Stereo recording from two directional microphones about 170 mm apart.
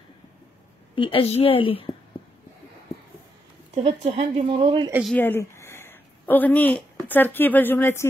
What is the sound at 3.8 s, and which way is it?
Speech, 35° right (ahead or behind).